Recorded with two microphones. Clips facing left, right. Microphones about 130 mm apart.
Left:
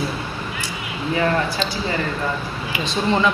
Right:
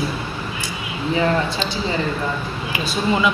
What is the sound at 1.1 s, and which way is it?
Speech, 20° right (ahead or behind).